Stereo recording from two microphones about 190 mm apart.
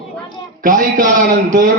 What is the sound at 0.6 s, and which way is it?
A man's voice, 45° right (ahead or behind).